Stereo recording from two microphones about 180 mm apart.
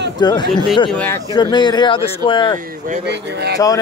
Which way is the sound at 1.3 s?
25° left (ahead or behind).